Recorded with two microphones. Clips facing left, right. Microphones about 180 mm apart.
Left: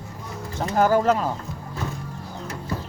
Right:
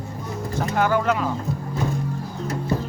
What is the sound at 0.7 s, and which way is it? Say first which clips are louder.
Speech: left 3 dB; 35° left (ahead or behind).